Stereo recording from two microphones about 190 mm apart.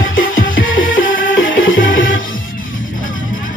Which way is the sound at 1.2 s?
90° left.